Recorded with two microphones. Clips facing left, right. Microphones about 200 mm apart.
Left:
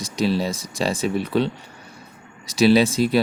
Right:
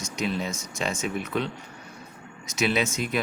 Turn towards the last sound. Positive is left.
turn(degrees=35)  # may be behind; listen again after turning